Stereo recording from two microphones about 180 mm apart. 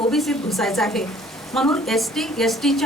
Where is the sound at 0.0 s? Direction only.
Centre (ahead or behind).